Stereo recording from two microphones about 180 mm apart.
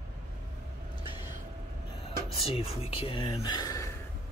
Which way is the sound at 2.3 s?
30° left (ahead or behind).